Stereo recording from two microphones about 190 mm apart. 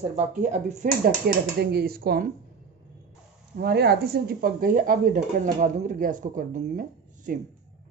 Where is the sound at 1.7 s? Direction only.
55° right (ahead or behind).